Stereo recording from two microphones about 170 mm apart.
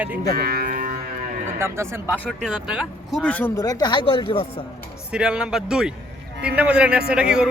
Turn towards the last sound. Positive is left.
turn(degrees=-5)  # may be behind; listen again after turning